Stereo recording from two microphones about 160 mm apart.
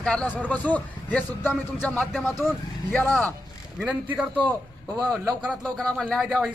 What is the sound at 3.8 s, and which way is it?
A man's voice, 5° right (ahead or behind).